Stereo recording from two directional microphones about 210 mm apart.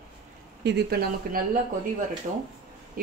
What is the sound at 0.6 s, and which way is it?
Speech, 50° right (ahead or behind).